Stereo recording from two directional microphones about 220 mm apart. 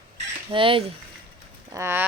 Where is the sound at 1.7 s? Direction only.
10° right (ahead or behind).